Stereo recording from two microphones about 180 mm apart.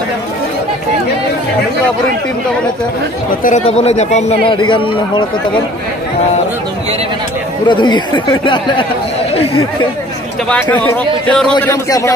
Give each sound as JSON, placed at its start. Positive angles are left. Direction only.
{"t": 3.4, "sound": "speech", "side_deg": 40}
{"t": 7.6, "sound": "speech", "side_deg": 25}
{"t": 10.5, "sound": "a man's voice", "side_deg": 10}
{"t": 11.6, "sound": "a man's voice", "side_deg": 15}